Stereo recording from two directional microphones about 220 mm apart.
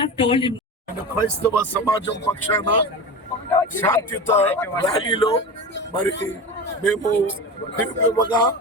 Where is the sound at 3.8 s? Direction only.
10° left (ahead or behind).